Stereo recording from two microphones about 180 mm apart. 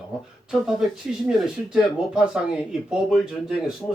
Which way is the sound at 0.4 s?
Centre (ahead or behind).